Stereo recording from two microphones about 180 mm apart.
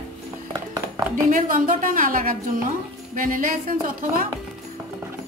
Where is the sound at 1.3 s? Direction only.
50° right (ahead or behind).